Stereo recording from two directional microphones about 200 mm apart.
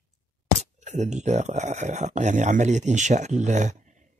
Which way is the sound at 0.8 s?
35° right (ahead or behind).